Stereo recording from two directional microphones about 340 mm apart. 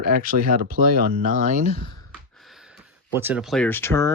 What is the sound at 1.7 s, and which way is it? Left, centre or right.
Speech, right.